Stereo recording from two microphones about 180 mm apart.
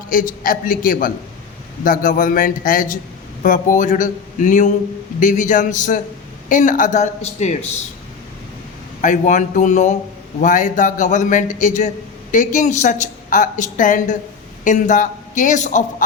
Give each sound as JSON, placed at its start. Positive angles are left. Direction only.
{"t": 0.1, "sound": "a woman's voice", "side_deg": 50}
{"t": 9.0, "sound": "a woman's voice", "side_deg": 45}